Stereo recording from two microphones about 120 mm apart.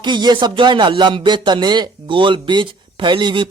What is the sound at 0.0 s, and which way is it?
Speech, 35° right (ahead or behind).